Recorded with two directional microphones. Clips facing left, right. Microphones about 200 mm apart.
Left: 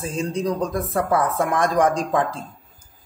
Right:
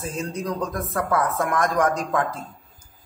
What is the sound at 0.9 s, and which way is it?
A woman's voice, 30° left (ahead or behind).